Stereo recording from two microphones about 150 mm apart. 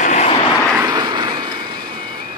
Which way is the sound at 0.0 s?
55° left (ahead or behind).